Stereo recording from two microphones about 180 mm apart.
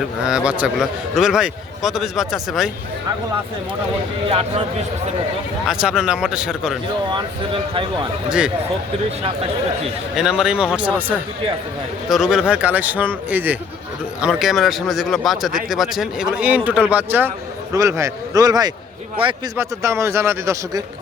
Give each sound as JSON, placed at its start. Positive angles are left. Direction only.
{"t": 0.3, "sound": "speech", "side_deg": -5}
{"t": 4.3, "sound": "a man's voice", "side_deg": -30}
{"t": 5.6, "sound": "speech", "side_deg": -5}
{"t": 7.1, "sound": "a man's voice", "side_deg": -25}
{"t": 8.3, "sound": "speech", "side_deg": -5}
{"t": 10.2, "sound": "speech", "side_deg": -5}
{"t": 12.0, "sound": "a man's voice", "side_deg": -5}
{"t": 19.5, "sound": "speech", "side_deg": -15}